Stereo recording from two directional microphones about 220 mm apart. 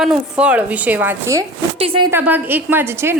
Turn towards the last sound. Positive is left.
turn(degrees=-10)  # may be behind; listen again after turning